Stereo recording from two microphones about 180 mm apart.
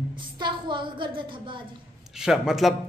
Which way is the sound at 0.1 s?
25° right (ahead or behind).